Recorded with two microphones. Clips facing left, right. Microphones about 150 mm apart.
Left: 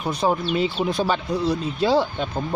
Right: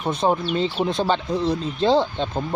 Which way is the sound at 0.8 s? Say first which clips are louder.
Right 1 dB; 25° right (ahead or behind).